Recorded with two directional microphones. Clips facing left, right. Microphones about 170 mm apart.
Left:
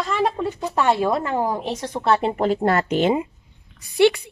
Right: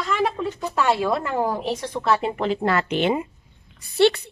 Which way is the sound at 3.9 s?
15° left (ahead or behind).